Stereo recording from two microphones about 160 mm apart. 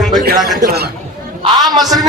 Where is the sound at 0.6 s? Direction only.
80° right.